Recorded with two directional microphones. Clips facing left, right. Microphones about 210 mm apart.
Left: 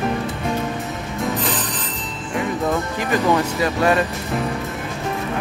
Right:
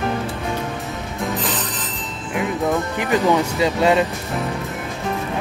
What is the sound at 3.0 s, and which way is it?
Speech, 15° right (ahead or behind).